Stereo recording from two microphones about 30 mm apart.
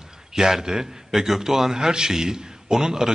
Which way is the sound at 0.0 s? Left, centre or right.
Centre.